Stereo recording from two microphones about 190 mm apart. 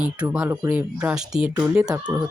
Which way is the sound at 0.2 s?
10° right (ahead or behind).